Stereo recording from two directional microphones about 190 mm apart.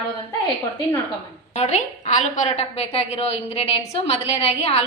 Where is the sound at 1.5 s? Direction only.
35° left (ahead or behind).